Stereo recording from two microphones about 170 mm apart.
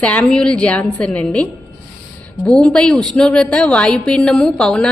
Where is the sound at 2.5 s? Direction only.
5° left (ahead or behind).